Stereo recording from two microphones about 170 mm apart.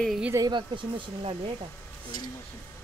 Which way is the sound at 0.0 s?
Centre (ahead or behind).